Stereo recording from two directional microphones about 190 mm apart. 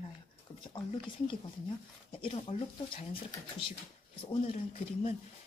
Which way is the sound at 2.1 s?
30° left (ahead or behind).